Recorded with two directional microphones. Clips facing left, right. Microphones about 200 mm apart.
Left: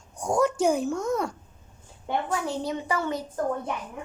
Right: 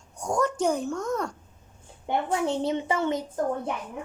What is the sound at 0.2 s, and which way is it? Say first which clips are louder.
A woman's voice: left 2 dB; 10° left (ahead or behind).